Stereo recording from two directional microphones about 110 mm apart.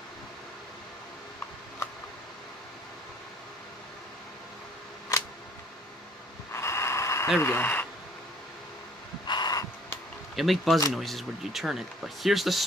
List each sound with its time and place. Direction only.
5.1 s camera: 30° left (ahead or behind)
6.5 s snort: 25° left (ahead or behind)
7.3 s speech: 20° left (ahead or behind)
9.2 s a sound: 40° left (ahead or behind)
10.3 s speech: centre (ahead or behind)